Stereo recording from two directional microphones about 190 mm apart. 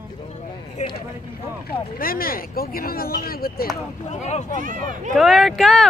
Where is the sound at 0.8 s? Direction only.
40° left (ahead or behind).